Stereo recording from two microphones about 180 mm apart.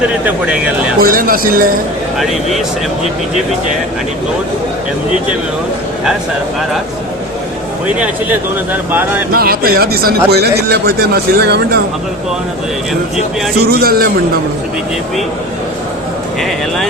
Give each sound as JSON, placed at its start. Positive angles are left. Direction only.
{"t": 0.3, "sound": "speech", "side_deg": -10}
{"t": 1.0, "sound": "speech", "side_deg": -50}
{"t": 8.9, "sound": "speech", "side_deg": -10}
{"t": 9.3, "sound": "speech", "side_deg": -55}
{"t": 13.6, "sound": "speech", "side_deg": -60}
{"t": 16.4, "sound": "speech", "side_deg": 0}